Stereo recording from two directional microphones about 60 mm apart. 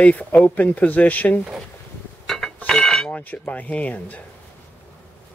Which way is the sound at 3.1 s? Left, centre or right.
Left.